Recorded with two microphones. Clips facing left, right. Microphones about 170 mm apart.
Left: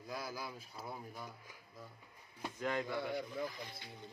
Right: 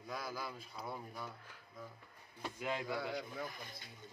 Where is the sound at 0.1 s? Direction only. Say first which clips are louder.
Even; 5° left (ahead or behind).